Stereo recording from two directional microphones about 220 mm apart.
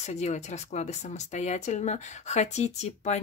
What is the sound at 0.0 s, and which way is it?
Speech, 30° left (ahead or behind).